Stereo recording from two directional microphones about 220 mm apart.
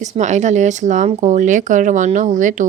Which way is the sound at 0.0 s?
35° right (ahead or behind).